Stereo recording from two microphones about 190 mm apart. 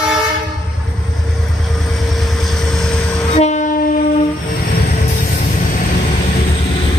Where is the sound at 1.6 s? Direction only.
Centre (ahead or behind).